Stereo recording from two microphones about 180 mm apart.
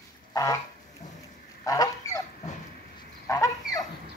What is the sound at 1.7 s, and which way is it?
Goose, 20° left (ahead or behind).